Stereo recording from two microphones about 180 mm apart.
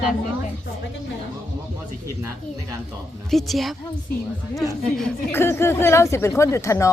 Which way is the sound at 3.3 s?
Centre (ahead or behind).